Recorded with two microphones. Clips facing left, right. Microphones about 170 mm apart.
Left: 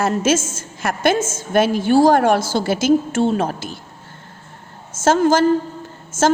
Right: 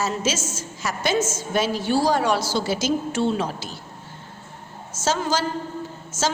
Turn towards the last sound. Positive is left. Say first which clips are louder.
# left 7 dB
turn(degrees=50)  # may be behind; listen again after turning